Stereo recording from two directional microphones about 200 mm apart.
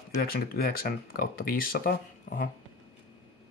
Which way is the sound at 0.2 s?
50° left (ahead or behind).